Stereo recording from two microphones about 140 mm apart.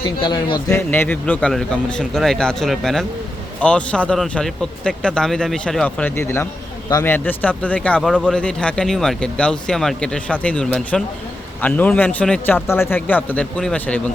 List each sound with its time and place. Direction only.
0.0 s a man's voice: 35° left (ahead or behind)
0.7 s speech: 15° left (ahead or behind)